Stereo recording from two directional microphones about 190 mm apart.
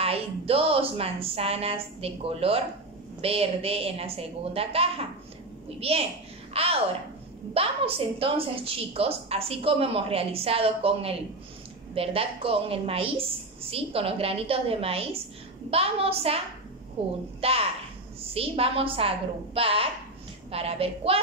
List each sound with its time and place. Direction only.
0.0 s a woman's voice: 30° right (ahead or behind)